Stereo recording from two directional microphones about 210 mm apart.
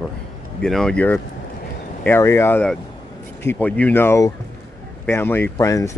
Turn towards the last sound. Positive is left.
turn(degrees=15)  # may be behind; listen again after turning